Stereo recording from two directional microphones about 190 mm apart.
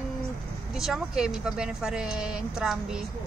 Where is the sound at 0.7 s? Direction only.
5° right (ahead or behind).